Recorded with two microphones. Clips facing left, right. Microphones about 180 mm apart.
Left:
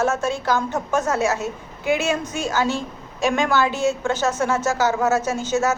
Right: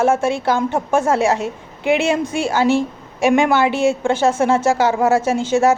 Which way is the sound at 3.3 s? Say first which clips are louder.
Right 5 dB; 20° right (ahead or behind).